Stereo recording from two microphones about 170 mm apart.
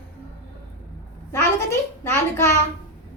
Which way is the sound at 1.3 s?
15° left (ahead or behind).